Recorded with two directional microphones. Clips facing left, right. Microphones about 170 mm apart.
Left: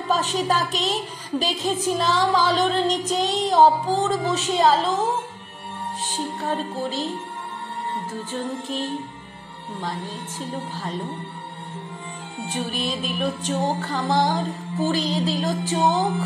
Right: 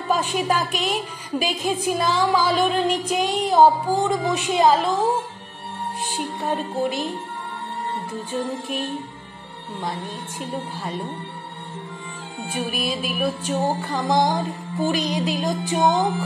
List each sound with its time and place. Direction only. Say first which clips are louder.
0.1 s music: right 1 dB; 10° right (ahead or behind)
10.4 s music: right 1 dB; 10° right (ahead or behind)
12.4 s music: right 1 dB; 10° right (ahead or behind)